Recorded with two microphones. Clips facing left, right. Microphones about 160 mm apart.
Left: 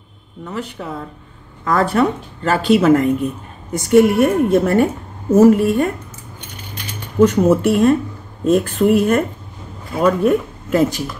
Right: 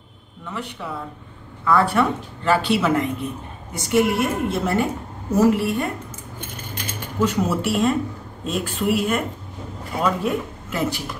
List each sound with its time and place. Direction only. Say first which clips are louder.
0.5 s a woman's voice: left 4 dB; 40° left (ahead or behind)
7.4 s a woman's voice: left 8 dB; 50° left (ahead or behind)